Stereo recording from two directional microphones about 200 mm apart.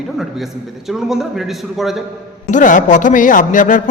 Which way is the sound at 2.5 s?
40° left (ahead or behind).